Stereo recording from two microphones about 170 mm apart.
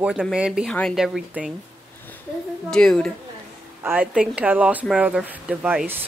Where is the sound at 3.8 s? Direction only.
10° right (ahead or behind).